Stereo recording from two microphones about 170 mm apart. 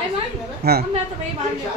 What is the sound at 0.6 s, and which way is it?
Speech, 70° right (ahead or behind).